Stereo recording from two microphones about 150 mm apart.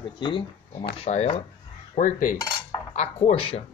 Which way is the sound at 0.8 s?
45° left (ahead or behind).